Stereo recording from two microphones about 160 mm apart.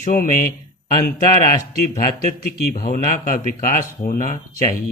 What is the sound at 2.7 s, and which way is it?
Speech, 60° left (ahead or behind).